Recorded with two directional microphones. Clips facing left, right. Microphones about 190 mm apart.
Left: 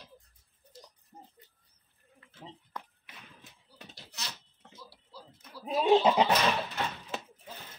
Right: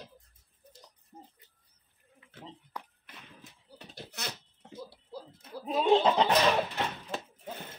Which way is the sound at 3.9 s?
55° right (ahead or behind).